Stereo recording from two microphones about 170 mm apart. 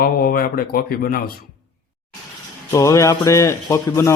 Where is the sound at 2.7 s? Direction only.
20° left (ahead or behind).